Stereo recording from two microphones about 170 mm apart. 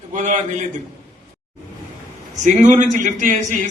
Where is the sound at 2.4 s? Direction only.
45° right (ahead or behind).